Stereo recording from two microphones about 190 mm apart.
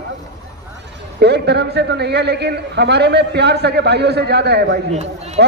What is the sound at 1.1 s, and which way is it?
A man's voice, 65° right (ahead or behind).